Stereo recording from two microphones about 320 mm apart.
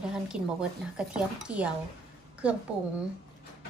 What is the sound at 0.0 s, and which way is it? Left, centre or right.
A woman's voice, centre.